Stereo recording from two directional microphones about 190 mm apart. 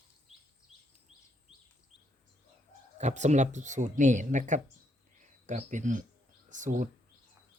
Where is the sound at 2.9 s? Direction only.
40° right (ahead or behind).